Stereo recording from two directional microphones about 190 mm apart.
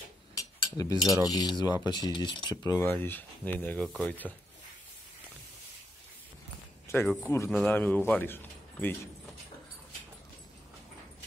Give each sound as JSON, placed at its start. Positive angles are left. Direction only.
{"t": 0.3, "sound": "cutlery", "side_deg": 20}
{"t": 1.2, "sound": "a man's voice", "side_deg": 20}
{"t": 6.9, "sound": "a man's voice", "side_deg": 10}